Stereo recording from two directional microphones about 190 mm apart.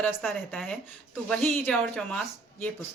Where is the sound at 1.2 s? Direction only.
5° left (ahead or behind).